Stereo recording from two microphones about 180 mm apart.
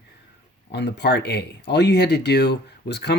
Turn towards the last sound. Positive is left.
turn(degrees=70)  # may be behind; listen again after turning